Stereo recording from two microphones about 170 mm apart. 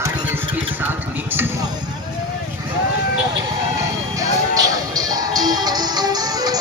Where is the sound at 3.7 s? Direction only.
20° right (ahead or behind).